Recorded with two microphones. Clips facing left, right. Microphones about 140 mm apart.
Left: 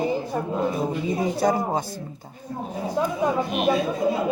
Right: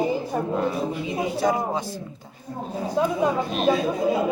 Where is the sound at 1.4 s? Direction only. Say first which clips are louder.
Left 1 dB; 40° left (ahead or behind).